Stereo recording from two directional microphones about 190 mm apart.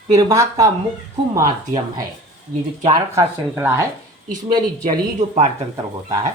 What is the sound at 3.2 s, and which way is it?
Speech, 10° right (ahead or behind).